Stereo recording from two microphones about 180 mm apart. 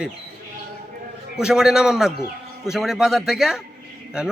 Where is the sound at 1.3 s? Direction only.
5° right (ahead or behind).